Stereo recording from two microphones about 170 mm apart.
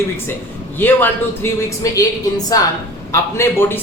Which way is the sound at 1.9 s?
20° left (ahead or behind).